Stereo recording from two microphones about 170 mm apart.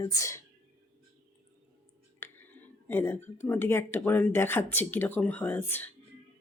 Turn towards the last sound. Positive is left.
turn(degrees=10)  # may be behind; listen again after turning